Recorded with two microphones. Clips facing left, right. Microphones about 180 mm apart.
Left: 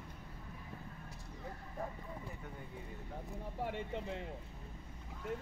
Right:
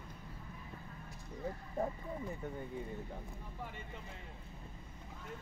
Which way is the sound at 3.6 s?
70° left (ahead or behind).